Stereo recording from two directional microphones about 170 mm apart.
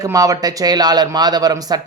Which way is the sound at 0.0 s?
20° right (ahead or behind).